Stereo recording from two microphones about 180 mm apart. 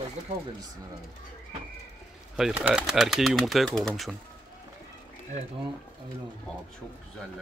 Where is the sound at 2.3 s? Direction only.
5° right (ahead or behind).